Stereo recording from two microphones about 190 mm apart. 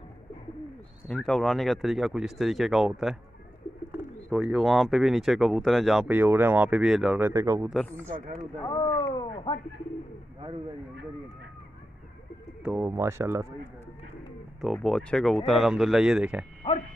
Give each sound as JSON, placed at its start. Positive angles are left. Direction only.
{"t": 1.0, "sound": "speech", "side_deg": 5}
{"t": 8.6, "sound": "a sound", "side_deg": 25}
{"t": 12.6, "sound": "speech", "side_deg": -5}
{"t": 12.9, "sound": "speech", "side_deg": -15}
{"t": 14.6, "sound": "speech", "side_deg": 0}